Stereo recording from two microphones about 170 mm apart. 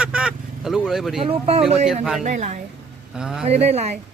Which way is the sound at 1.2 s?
40° right (ahead or behind).